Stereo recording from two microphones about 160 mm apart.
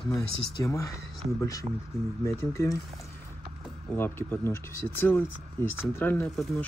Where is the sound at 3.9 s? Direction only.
15° left (ahead or behind).